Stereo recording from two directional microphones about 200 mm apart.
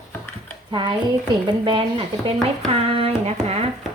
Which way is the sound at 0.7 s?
25° right (ahead or behind).